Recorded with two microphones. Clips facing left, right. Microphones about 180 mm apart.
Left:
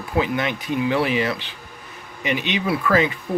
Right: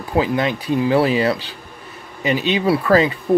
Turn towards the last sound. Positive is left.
turn(degrees=-35)  # may be behind; listen again after turning